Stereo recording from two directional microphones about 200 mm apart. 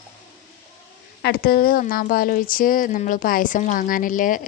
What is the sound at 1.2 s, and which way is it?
Speech, 50° left (ahead or behind).